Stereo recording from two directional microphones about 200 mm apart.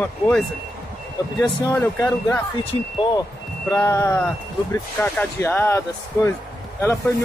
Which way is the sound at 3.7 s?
15° left (ahead or behind).